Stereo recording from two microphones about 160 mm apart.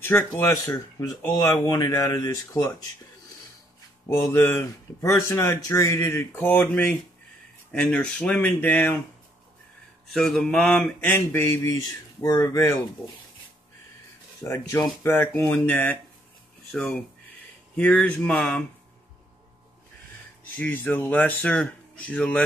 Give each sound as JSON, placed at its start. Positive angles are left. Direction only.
{"t": 0.1, "sound": "speech", "side_deg": 10}
{"t": 0.7, "sound": "speech", "side_deg": 25}
{"t": 5.0, "sound": "speech", "side_deg": 20}
{"t": 10.0, "sound": "speech", "side_deg": 0}
{"t": 14.4, "sound": "speech", "side_deg": 15}
{"t": 20.5, "sound": "speech", "side_deg": 10}